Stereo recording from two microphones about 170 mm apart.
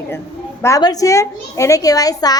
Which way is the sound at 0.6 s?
20° left (ahead or behind).